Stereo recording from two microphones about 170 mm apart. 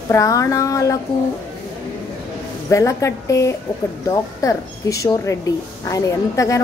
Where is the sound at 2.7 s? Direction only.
20° left (ahead or behind).